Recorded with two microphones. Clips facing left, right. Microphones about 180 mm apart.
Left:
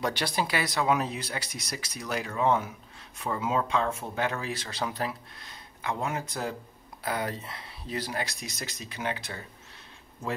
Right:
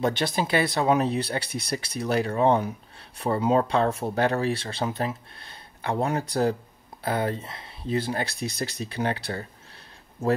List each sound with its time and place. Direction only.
0.0 s speech: 25° right (ahead or behind)
1.4 s speech: 60° right (ahead or behind)
1.7 s speech: 30° right (ahead or behind)